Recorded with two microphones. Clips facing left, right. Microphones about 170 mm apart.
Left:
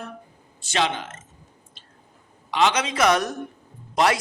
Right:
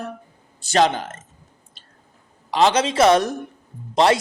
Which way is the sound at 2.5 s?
35° right (ahead or behind).